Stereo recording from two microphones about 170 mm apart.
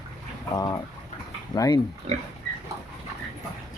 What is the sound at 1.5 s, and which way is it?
Speech, 20° left (ahead or behind).